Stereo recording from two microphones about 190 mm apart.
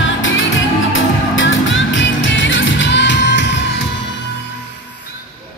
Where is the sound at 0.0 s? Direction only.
85° left; by 3.8 s 70° left (ahead or behind).